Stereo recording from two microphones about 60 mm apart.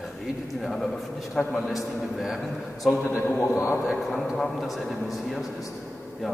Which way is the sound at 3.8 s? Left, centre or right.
Centre.